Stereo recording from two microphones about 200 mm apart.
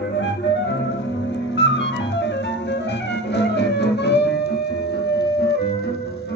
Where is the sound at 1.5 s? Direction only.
60° left (ahead or behind).